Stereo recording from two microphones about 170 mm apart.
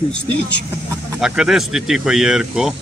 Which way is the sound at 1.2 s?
5° right (ahead or behind).